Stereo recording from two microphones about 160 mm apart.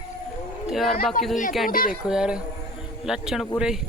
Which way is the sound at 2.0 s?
5° right (ahead or behind).